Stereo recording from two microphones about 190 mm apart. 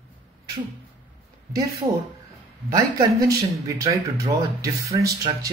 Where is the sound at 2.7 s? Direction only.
20° right (ahead or behind).